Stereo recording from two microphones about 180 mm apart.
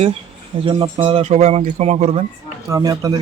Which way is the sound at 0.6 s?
30° right (ahead or behind).